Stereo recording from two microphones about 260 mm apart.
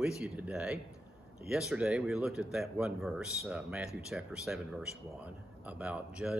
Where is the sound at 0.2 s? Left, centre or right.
Centre.